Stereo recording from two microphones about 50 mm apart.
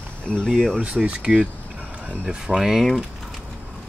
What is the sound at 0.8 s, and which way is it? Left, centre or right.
Speech, right.